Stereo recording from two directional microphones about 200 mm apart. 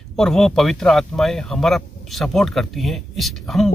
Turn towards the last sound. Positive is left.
turn(degrees=0)  # may be behind; listen again after turning